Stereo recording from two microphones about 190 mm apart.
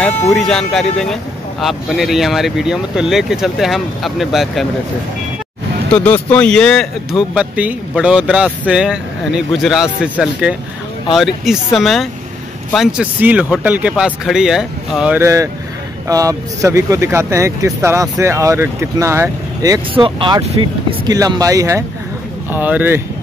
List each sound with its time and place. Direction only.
0.3 s speech: centre (ahead or behind)
5.9 s speech: 10° left (ahead or behind); by 23.0 s 10° right (ahead or behind)